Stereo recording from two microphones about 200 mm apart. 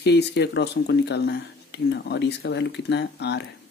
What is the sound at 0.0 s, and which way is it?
Speech, 60° left (ahead or behind).